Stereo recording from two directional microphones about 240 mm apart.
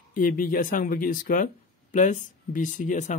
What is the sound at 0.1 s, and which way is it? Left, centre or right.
Speech, left.